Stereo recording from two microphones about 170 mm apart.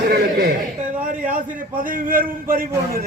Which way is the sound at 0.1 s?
65° right (ahead or behind).